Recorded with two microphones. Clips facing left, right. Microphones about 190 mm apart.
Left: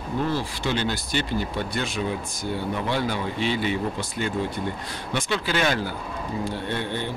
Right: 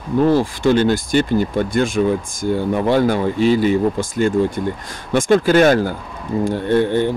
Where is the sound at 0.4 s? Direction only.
50° right (ahead or behind).